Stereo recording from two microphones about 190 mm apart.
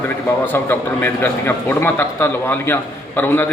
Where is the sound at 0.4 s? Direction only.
10° left (ahead or behind).